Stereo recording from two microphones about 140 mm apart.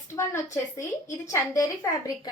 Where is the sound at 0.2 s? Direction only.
20° left (ahead or behind).